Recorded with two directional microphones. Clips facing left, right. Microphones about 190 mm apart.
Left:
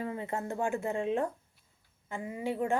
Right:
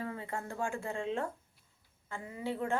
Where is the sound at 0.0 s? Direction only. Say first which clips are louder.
Left 4 dB; 20° left (ahead or behind).